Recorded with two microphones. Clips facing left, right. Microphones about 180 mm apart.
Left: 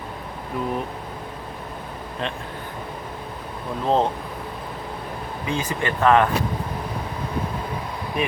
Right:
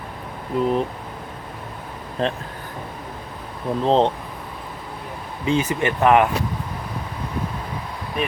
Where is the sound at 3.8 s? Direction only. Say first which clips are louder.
Right 3 dB; 30° right (ahead or behind).